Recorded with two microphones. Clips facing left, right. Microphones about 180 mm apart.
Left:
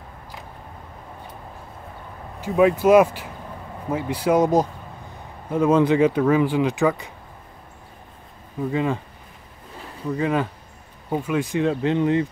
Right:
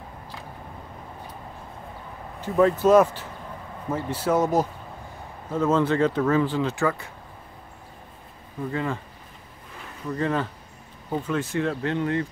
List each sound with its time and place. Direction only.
2.4 s speech: 10° left (ahead or behind)
8.7 s speech: 15° left (ahead or behind)
10.1 s speech: 10° left (ahead or behind)